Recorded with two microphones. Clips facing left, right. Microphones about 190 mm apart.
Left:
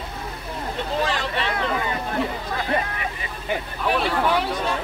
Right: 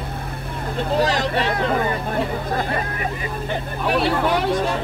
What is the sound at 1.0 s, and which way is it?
Speech, 40° right (ahead or behind).